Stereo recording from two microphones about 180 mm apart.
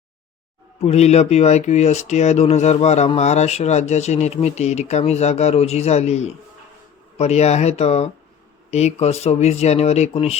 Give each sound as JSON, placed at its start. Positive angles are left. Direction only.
{"t": 0.8, "sound": "speech", "side_deg": 35}